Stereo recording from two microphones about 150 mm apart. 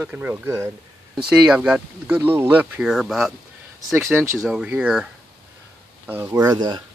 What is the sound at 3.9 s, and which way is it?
Speech, 15° right (ahead or behind).